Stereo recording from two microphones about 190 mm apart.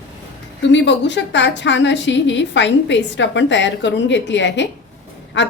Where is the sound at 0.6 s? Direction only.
70° left (ahead or behind).